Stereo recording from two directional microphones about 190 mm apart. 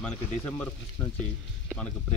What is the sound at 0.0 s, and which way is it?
Speech, 5° left (ahead or behind).